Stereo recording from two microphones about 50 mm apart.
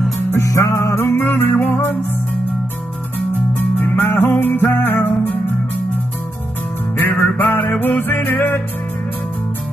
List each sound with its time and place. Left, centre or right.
0.4 s music: left
1.1 s music: left
3.5 s music: left
7.0 s music: left